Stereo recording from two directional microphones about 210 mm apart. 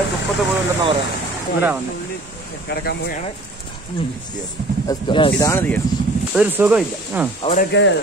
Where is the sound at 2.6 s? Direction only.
50° left (ahead or behind).